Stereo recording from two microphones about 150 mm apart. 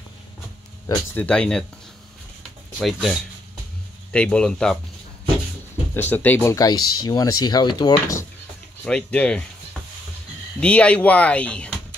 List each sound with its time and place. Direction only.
1.1 s speech: 10° left (ahead or behind)
2.8 s speech: centre (ahead or behind)
5.9 s speech: 10° left (ahead or behind)
8.8 s speech: 5° left (ahead or behind)
10.6 s speech: 5° left (ahead or behind)